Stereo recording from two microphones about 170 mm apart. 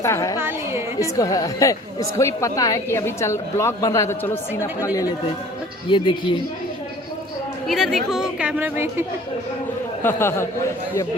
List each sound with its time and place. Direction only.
0.0 s a man's voice: 15° left (ahead or behind)
0.3 s a sound: 15° right (ahead or behind)
1.1 s a woman's voice: 20° left (ahead or behind)
5.9 s a woman's voice: 30° left (ahead or behind)
7.7 s a woman's voice: centre (ahead or behind)
10.0 s a man's voice: 15° left (ahead or behind)